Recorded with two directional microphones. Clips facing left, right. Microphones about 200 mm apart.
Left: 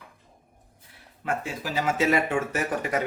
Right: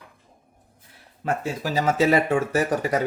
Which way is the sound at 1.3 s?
40° right (ahead or behind).